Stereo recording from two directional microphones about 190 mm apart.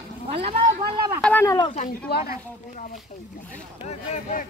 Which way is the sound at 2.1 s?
55° left (ahead or behind).